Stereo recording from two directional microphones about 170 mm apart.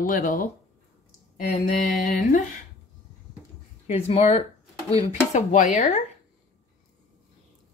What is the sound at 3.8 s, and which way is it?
Speech, 40° left (ahead or behind).